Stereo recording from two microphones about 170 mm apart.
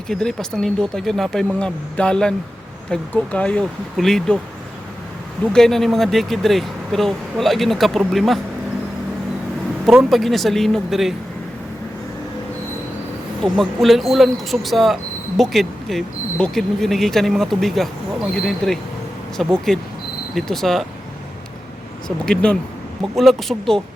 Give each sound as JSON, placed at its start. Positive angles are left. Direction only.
{"t": 0.1, "sound": "speech", "side_deg": 5}
{"t": 5.5, "sound": "speech", "side_deg": 0}
{"t": 9.8, "sound": "speech", "side_deg": 0}
{"t": 13.4, "sound": "speech", "side_deg": 0}
{"t": 22.3, "sound": "speech", "side_deg": 5}